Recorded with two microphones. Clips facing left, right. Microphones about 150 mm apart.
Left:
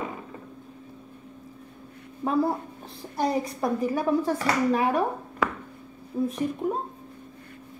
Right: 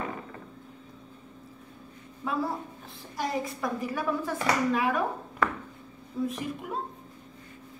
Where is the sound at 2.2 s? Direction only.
40° left (ahead or behind).